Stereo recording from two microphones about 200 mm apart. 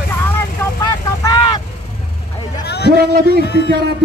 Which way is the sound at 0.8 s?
20° left (ahead or behind).